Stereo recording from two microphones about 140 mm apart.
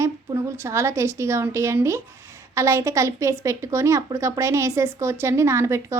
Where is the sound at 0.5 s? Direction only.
20° right (ahead or behind).